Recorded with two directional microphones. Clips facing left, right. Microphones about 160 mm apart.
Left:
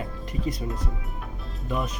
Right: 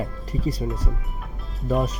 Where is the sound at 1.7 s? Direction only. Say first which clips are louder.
Right 6 dB; 40° right (ahead or behind).